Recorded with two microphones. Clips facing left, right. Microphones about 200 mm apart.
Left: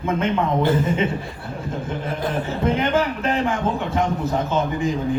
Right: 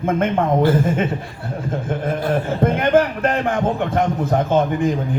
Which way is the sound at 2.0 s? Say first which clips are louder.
Right 5 dB; 50° right (ahead or behind).